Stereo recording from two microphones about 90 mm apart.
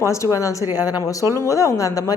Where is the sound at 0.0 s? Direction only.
35° left (ahead or behind).